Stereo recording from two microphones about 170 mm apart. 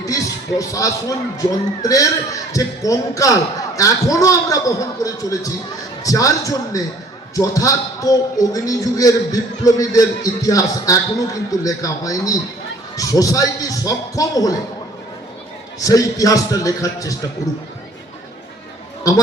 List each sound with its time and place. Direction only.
0.0 s speech: 20° left (ahead or behind)
15.8 s speech: 20° left (ahead or behind)
19.1 s speech: 20° left (ahead or behind)